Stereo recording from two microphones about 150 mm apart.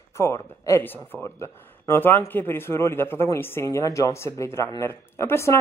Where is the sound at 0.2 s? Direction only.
20° left (ahead or behind).